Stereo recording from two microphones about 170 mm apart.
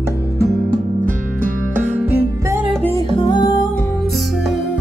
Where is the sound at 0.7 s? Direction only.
50° right (ahead or behind).